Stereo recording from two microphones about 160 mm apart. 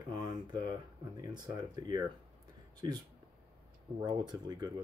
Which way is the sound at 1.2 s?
25° right (ahead or behind).